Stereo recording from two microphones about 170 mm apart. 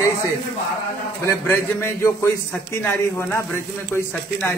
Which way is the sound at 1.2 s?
15° left (ahead or behind).